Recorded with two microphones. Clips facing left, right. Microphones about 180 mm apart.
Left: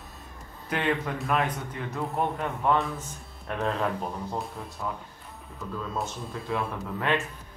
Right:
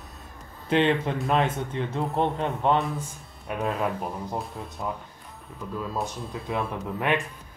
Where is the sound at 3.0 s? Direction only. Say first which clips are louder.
Right 2 dB; 10° right (ahead or behind).